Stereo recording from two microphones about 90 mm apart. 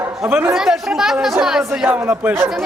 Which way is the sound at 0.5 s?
5° right (ahead or behind).